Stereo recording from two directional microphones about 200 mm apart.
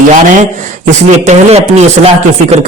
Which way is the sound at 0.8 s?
35° right (ahead or behind).